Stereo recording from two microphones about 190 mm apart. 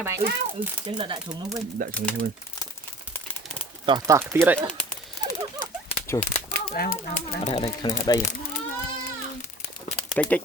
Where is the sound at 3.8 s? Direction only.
25° right (ahead or behind).